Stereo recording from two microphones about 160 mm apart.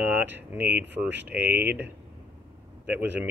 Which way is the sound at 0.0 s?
10° right (ahead or behind).